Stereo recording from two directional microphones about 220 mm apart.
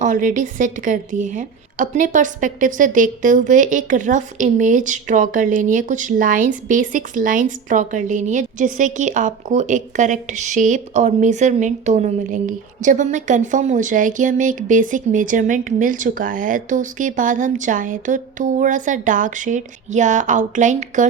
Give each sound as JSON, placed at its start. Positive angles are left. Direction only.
{"t": 0.0, "sound": "a woman's voice", "side_deg": -35}